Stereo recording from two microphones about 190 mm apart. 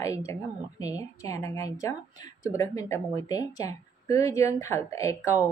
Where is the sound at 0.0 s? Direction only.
15° left (ahead or behind).